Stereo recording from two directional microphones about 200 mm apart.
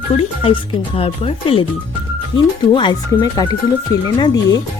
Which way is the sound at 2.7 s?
20° left (ahead or behind).